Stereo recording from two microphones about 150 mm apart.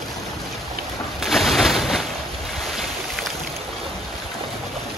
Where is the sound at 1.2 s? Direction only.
Centre (ahead or behind).